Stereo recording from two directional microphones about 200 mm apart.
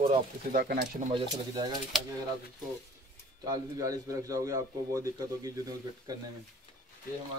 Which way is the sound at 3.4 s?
20° right (ahead or behind).